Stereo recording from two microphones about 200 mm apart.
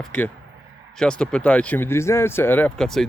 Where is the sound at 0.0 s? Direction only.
5° left (ahead or behind).